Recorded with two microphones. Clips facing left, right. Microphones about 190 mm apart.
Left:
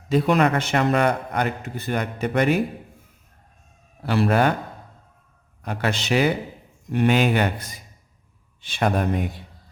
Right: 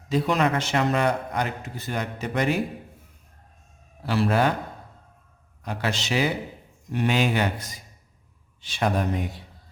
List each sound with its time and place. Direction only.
0.1 s a man's voice: 55° left (ahead or behind)
4.0 s a man's voice: 60° left (ahead or behind)
5.6 s a man's voice: 55° left (ahead or behind)